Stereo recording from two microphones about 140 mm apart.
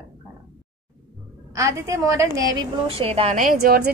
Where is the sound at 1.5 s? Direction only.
20° right (ahead or behind).